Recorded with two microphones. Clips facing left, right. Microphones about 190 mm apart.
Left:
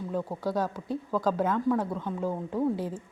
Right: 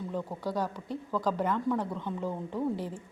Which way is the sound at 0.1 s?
10° left (ahead or behind).